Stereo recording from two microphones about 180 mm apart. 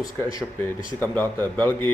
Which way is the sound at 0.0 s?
20° left (ahead or behind).